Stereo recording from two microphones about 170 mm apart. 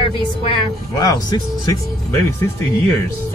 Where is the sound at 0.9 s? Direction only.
20° left (ahead or behind).